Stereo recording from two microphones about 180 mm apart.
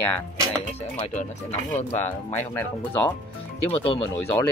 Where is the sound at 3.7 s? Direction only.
35° left (ahead or behind).